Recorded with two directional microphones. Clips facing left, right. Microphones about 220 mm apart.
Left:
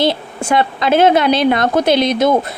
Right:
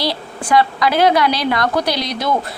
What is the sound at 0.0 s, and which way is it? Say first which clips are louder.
A woman's voice: left 6 dB; 25° left (ahead or behind).